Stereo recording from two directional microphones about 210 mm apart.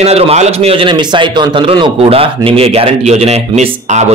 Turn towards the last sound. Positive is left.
turn(degrees=-30)  # may be behind; listen again after turning